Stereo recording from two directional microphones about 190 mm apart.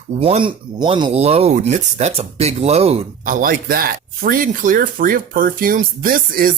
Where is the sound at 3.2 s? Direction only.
45° right (ahead or behind).